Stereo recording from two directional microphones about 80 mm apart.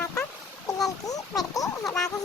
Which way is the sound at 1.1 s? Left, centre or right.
Left.